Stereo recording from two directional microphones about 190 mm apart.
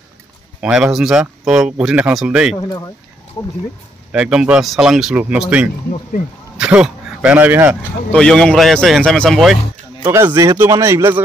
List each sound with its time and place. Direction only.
0.6 s speech: 5° right (ahead or behind)
2.5 s speech: 20° left (ahead or behind)
4.1 s speech: 5° right (ahead or behind)
8.1 s speech: 5° left (ahead or behind)
10.0 s speech: 10° right (ahead or behind)